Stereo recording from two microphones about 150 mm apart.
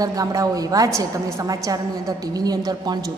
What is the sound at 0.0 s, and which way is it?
A woman's voice, 25° right (ahead or behind).